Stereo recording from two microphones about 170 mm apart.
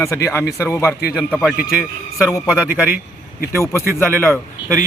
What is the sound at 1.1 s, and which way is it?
A man's voice, 5° right (ahead or behind).